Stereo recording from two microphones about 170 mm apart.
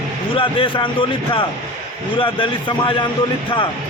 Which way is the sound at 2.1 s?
30° left (ahead or behind).